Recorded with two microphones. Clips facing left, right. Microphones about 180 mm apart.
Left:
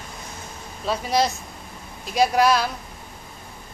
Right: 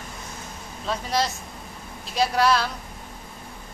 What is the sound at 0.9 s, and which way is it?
Speech, 10° left (ahead or behind).